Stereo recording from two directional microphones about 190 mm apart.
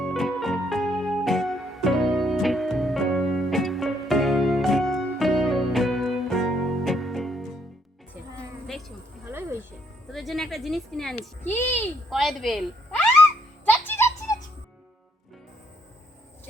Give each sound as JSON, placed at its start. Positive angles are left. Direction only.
{"t": 0.0, "sound": "music", "side_deg": 0}
{"t": 9.2, "sound": "music", "side_deg": -10}
{"t": 10.1, "sound": "a sound", "side_deg": 0}
{"t": 12.1, "sound": "a woman's voice", "side_deg": 0}
{"t": 13.7, "sound": "music", "side_deg": 10}